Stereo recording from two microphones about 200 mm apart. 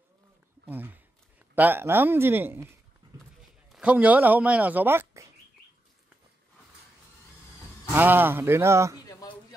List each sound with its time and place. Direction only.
0.7 s speech: 10° right (ahead or behind)
7.9 s speech: 10° right (ahead or behind)
9.0 s a sound: 20° left (ahead or behind)